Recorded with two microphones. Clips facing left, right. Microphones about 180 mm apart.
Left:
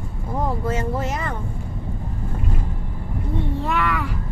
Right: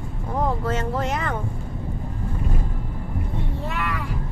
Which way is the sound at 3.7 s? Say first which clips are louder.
Left 5 dB; 90° left.